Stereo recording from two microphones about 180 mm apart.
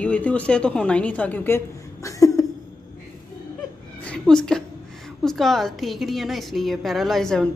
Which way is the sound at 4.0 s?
5° left (ahead or behind).